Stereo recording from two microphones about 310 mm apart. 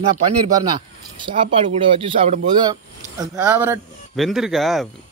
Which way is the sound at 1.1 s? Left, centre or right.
Centre.